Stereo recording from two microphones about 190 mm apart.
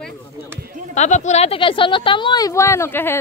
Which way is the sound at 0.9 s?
35° left (ahead or behind).